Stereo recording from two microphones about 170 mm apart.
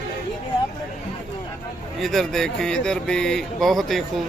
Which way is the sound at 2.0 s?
Centre (ahead or behind).